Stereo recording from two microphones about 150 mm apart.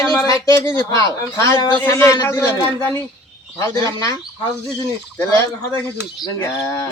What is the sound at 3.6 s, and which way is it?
Speech, 20° left (ahead or behind).